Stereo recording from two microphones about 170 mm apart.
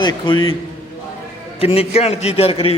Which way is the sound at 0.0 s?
25° left (ahead or behind).